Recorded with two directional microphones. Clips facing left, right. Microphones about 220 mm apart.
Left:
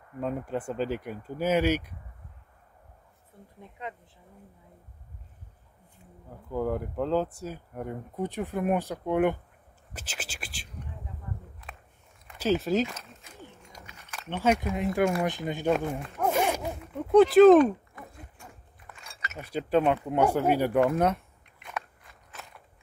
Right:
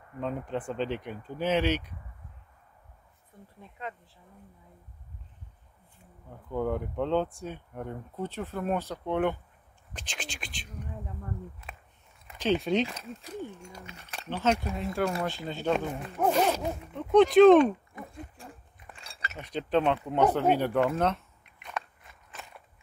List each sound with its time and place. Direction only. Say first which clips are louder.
0.2 s speech: left 2 dB; 5° left (ahead or behind)
3.8 s speech: even; 20° left (ahead or behind)
6.5 s speech: left 1 dB; 5° left (ahead or behind)
9.9 s whispering: even; 5° left (ahead or behind)
12.4 s speech: left 1 dB; 5° left (ahead or behind)
13.7 s a sound: right 4 dB; 30° right (ahead or behind)
14.4 s speech: left 3 dB; 15° left (ahead or behind)
16.3 s zipper: right 1 dB; 10° left (ahead or behind)
18.4 s a sound: right 3 dB; 30° right (ahead or behind)
19.3 s speech: left 2 dB; 10° left (ahead or behind)